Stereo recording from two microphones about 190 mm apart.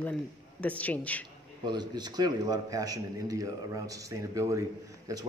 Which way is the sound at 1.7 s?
20° right (ahead or behind).